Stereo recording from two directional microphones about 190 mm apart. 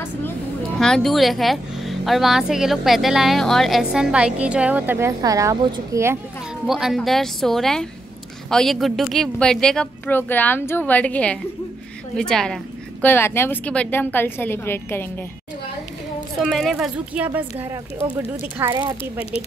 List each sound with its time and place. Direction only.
0.7 s a woman's voice: 5° left (ahead or behind); by 6.1 s 15° right (ahead or behind)
6.6 s a woman's voice: centre (ahead or behind)
16.3 s a woman's voice: centre (ahead or behind)
18.7 s speech: 25° right (ahead or behind)